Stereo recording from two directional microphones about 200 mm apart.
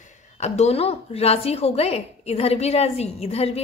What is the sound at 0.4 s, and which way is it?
A woman's voice, 35° left (ahead or behind).